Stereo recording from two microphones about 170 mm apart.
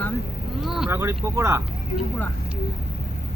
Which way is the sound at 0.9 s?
15° right (ahead or behind).